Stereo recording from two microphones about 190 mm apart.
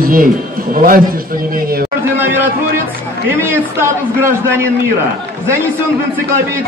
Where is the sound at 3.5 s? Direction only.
15° right (ahead or behind).